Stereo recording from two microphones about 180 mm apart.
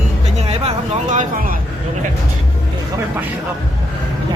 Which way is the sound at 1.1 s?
45° right (ahead or behind).